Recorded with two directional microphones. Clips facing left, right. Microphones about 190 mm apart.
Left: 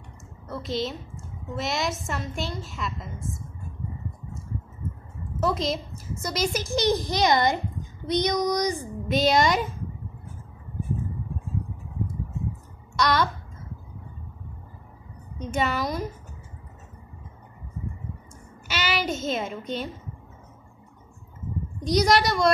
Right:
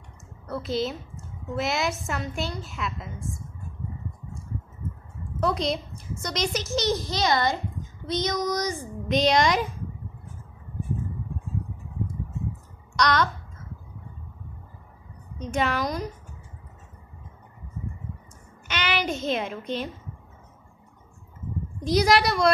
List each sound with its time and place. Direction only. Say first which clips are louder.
0.5 s a woman's voice: right 2 dB; centre (ahead or behind)
5.4 s a woman's voice: even; centre (ahead or behind)
9.1 s a woman's voice: even; 5° left (ahead or behind)
12.9 s a sound: even; 5° left (ahead or behind)
15.4 s a woman's voice: even; 5° left (ahead or behind)
18.7 s a child's voice: even; 5° left (ahead or behind)
21.7 s a woman's voice: even; centre (ahead or behind)